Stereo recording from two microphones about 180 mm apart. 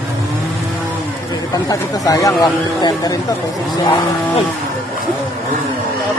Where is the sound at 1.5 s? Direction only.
20° left (ahead or behind).